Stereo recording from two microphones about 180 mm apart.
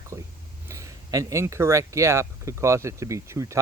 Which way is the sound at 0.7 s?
15° right (ahead or behind).